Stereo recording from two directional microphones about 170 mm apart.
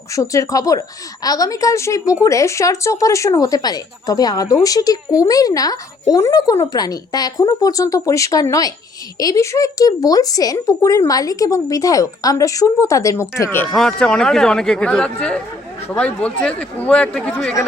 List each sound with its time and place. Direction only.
0.1 s speech: 20° left (ahead or behind)
13.7 s speech: 5° left (ahead or behind)